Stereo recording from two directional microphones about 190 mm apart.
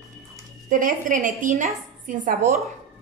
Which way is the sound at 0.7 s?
45° right (ahead or behind).